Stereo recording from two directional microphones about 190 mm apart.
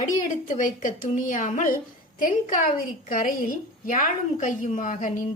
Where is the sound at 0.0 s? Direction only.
40° left (ahead or behind).